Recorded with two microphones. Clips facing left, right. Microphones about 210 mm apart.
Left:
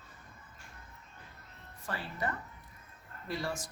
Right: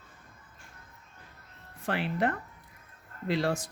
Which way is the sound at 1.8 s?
85° right.